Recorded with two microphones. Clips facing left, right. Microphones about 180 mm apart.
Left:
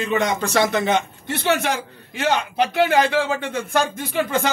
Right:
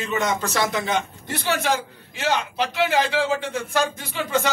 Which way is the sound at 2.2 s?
55° left (ahead or behind).